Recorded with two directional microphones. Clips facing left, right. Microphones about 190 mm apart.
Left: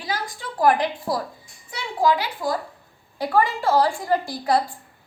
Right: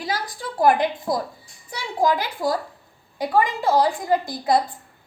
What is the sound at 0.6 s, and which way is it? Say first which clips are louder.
Speech: right 1 dB; 20° right (ahead or behind).